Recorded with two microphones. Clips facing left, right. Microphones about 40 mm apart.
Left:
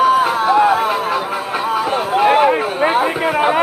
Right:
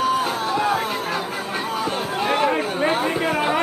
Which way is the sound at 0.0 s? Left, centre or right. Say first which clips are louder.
Left 8 dB; centre.